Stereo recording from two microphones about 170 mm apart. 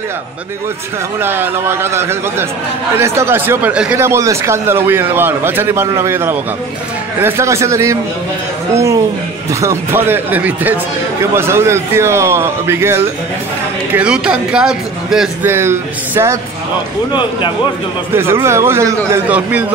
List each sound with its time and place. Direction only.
1.2 s speech: 15° right (ahead or behind)
15.5 s speech: 15° right (ahead or behind)
17.1 s a man's voice: 30° left (ahead or behind)
18.1 s speech: 15° right (ahead or behind)